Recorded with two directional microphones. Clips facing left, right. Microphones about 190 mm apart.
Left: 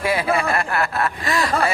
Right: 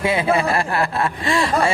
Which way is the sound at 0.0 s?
25° right (ahead or behind).